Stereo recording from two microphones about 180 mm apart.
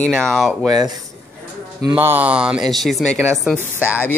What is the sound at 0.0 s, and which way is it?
Speech, 5° left (ahead or behind).